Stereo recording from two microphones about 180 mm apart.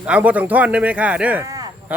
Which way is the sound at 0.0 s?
10° right (ahead or behind).